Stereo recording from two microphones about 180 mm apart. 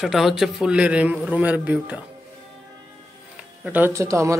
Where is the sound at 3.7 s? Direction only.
10° right (ahead or behind).